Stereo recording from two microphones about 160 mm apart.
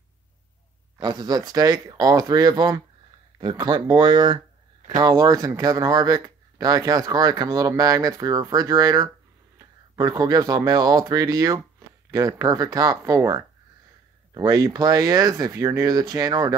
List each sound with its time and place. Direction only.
0.9 s speech: 25° right (ahead or behind)